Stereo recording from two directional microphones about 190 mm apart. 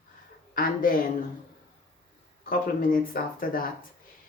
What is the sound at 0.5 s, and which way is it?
Speech, 50° left (ahead or behind).